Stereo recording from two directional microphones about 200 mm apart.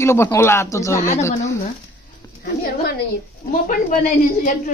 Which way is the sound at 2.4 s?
50° left (ahead or behind).